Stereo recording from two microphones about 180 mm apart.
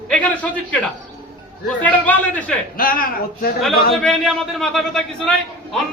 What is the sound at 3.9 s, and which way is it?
A man's voice, centre (ahead or behind).